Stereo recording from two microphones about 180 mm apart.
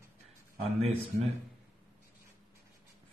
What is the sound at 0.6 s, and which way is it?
Speech, 35° right (ahead or behind).